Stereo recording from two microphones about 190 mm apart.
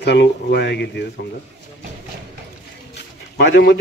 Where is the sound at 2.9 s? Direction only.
70° left (ahead or behind).